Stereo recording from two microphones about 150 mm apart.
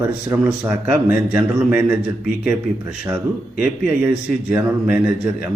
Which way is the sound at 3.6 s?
10° right (ahead or behind).